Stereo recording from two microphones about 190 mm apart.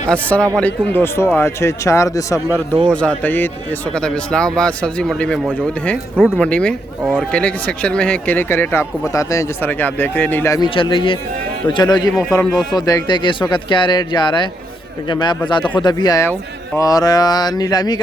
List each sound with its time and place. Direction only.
0.1 s speech: 5° left (ahead or behind)
2.5 s speech: centre (ahead or behind); by 18.0 s 20° left (ahead or behind)